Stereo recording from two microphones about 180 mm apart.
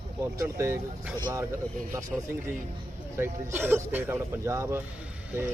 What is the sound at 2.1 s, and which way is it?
A man's voice, 5° right (ahead or behind).